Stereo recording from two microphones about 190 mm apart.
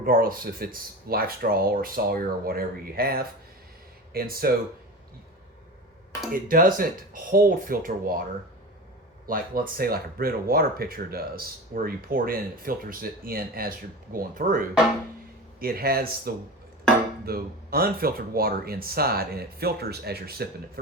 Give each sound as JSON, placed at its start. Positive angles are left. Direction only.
{"t": 0.0, "sound": "speech", "side_deg": -50}
{"t": 6.3, "sound": "speech", "side_deg": -45}
{"t": 9.2, "sound": "speech", "side_deg": -50}
{"t": 15.6, "sound": "speech", "side_deg": -50}